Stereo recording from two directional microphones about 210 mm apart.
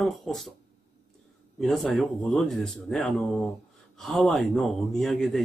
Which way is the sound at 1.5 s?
Centre (ahead or behind).